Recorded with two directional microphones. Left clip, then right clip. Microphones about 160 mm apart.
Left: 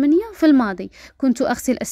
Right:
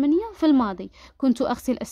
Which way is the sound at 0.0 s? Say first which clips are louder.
Left 5 dB; 15° left (ahead or behind).